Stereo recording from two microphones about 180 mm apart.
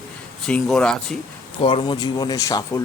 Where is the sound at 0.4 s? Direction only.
5° left (ahead or behind).